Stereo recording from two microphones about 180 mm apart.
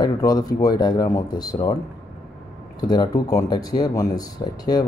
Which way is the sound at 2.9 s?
20° left (ahead or behind).